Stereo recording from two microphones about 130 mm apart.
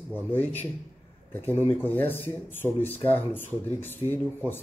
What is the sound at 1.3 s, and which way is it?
Speech, 15° left (ahead or behind).